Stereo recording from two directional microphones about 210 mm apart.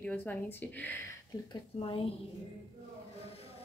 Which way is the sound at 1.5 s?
25° left (ahead or behind).